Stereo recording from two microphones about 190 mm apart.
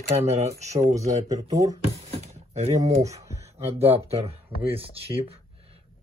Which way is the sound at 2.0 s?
35° right (ahead or behind).